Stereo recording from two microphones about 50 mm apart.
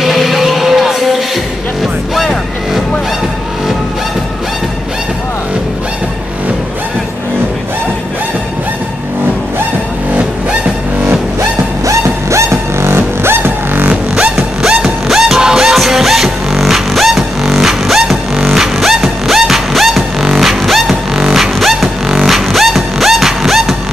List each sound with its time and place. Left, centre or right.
0.0 s music: centre
11.8 s music: right
13.4 s music: right
14.6 s music: centre